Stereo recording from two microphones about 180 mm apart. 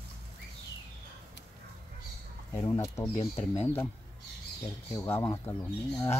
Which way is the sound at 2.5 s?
20° left (ahead or behind).